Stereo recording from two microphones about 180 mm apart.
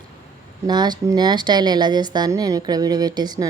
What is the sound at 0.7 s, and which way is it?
Speech, 25° right (ahead or behind).